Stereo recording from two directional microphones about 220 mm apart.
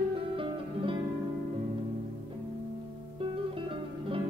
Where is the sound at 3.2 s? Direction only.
25° right (ahead or behind).